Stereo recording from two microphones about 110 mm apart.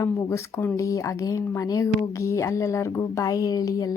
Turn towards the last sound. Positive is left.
turn(degrees=30)  # may be behind; listen again after turning